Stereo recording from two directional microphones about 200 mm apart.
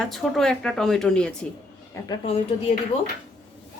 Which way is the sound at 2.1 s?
30° left (ahead or behind).